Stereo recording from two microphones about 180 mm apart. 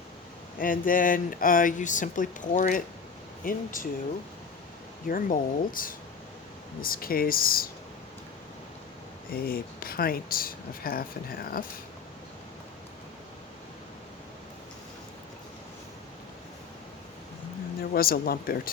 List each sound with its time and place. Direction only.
0.6 s speech: 50° left (ahead or behind)
5.0 s speech: 50° left (ahead or behind)
9.3 s speech: 55° left (ahead or behind)
17.9 s speech: 55° left (ahead or behind)